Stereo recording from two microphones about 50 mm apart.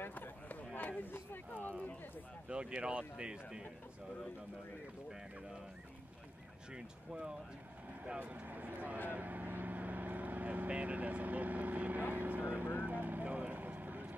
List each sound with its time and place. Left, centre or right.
0.0 s a sound: left
0.7 s speech: left
1.5 s speech: left
2.4 s speech: centre
6.7 s speech: centre; by 9.0 s right
9.1 s vehicle: right